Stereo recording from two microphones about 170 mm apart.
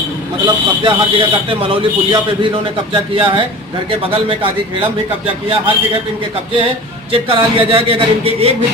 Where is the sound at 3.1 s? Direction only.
30° right (ahead or behind).